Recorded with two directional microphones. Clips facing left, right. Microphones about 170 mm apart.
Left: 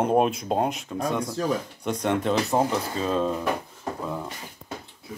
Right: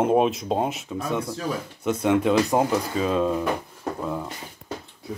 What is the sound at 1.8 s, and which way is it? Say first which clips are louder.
Speech: right 4 dB; 5° right (ahead or behind).